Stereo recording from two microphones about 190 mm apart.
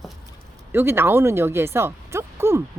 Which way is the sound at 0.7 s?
10° right (ahead or behind).